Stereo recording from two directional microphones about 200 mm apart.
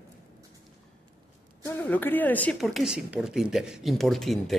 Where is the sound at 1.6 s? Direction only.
10° left (ahead or behind).